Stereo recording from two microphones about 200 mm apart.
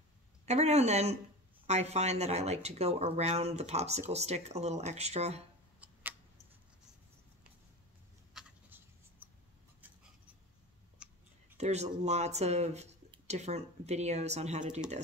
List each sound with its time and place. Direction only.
0.5 s speech: 35° right (ahead or behind)
8.3 s writing: 5° right (ahead or behind)
11.0 s a sound: 5° right (ahead or behind)
11.5 s speech: 35° right (ahead or behind)